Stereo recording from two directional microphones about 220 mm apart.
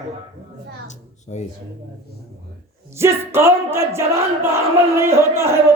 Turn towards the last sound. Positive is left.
turn(degrees=-10)  # may be behind; listen again after turning